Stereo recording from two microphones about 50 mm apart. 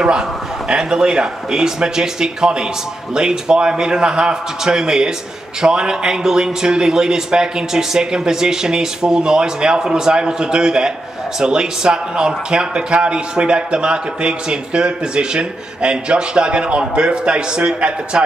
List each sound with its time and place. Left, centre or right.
0.7 s a man's voice: centre